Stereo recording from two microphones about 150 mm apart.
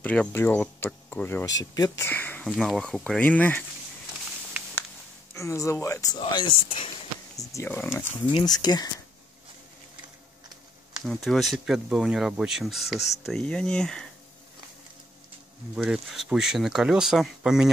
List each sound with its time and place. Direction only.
0.0 s speech: 10° left (ahead or behind)
2.4 s speech: centre (ahead or behind)
5.3 s speech: 20° left (ahead or behind); by 6.9 s 35° left (ahead or behind)
7.3 s speech: 15° left (ahead or behind)
8.3 s speech: 30° left (ahead or behind)
11.1 s speech: centre (ahead or behind)
15.7 s speech: 5° right (ahead or behind)